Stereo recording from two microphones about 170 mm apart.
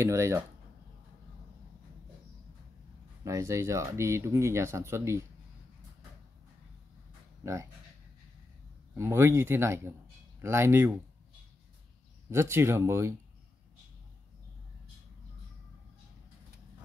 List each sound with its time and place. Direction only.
0.0 s speech: 15° right (ahead or behind)
3.3 s speech: 20° right (ahead or behind)
8.9 s speech: 15° right (ahead or behind)
12.3 s speech: 15° right (ahead or behind)